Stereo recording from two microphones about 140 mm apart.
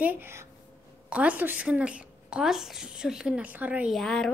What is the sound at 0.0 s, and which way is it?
Speech, 15° right (ahead or behind).